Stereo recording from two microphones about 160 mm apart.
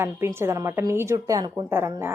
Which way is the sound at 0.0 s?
15° right (ahead or behind).